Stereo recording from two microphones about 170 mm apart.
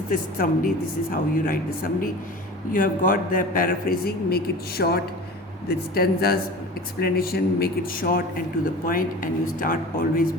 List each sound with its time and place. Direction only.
0.1 s a woman's voice: 55° left (ahead or behind)